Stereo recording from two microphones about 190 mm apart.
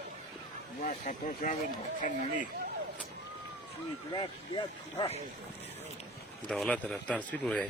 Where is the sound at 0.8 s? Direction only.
45° left (ahead or behind).